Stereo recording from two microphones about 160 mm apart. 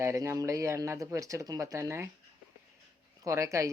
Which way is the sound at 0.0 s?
15° right (ahead or behind).